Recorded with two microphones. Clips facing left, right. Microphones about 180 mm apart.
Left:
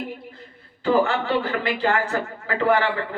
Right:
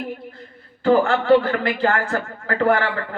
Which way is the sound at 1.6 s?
50° right (ahead or behind).